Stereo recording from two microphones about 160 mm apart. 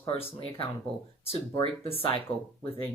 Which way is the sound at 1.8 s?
35° left (ahead or behind).